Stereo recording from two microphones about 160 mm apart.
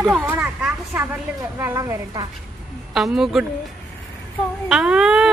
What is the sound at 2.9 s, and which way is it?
Speech, centre (ahead or behind).